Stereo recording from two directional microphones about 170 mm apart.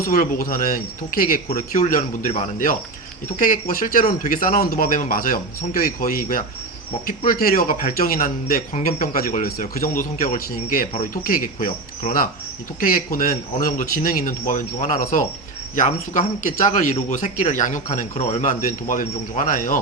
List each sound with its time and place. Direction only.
0.0 s speech: 55° left (ahead or behind)
1.5 s speech: 45° left (ahead or behind)
12.8 s speech: 55° left (ahead or behind)